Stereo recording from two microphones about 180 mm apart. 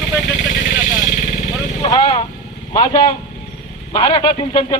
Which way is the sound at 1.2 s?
45° left (ahead or behind).